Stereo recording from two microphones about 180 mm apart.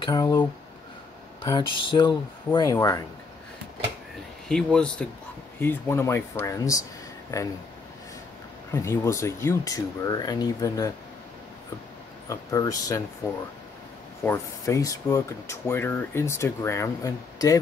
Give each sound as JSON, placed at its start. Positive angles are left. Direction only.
{"t": 0.0, "sound": "speech", "side_deg": 20}
{"t": 1.4, "sound": "speech", "side_deg": 25}
{"t": 4.5, "sound": "speech", "side_deg": 5}
{"t": 8.7, "sound": "speech", "side_deg": 15}
{"t": 12.3, "sound": "speech", "side_deg": 20}
{"t": 14.2, "sound": "speech", "side_deg": 15}